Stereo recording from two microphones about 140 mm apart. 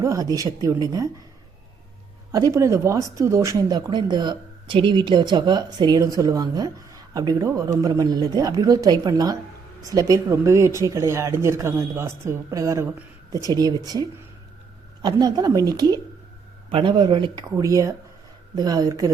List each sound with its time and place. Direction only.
0.0 s speech: 25° right (ahead or behind)
2.3 s speech: 25° right (ahead or behind)
15.0 s speech: 30° right (ahead or behind)